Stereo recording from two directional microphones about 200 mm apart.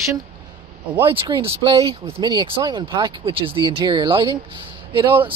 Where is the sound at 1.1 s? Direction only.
25° right (ahead or behind).